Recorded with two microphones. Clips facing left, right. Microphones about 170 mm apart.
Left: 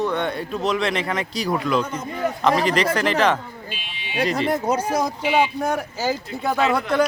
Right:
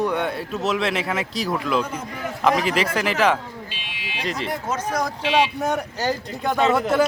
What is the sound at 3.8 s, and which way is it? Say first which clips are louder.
Buzzer: right 1 dB; 90° right.